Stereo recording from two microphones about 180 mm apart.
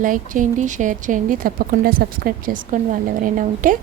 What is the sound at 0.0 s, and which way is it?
Speech, 45° right (ahead or behind).